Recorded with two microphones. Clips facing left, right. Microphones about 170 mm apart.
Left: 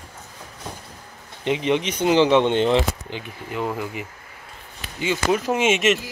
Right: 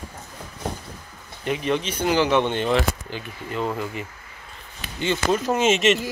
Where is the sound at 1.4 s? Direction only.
20° left (ahead or behind); by 6.0 s 5° left (ahead or behind).